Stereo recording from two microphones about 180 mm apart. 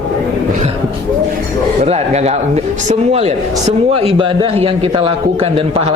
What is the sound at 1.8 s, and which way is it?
A man's voice, 35° right (ahead or behind).